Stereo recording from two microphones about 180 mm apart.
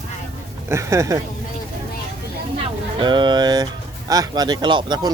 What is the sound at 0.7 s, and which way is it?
Speech, 15° right (ahead or behind).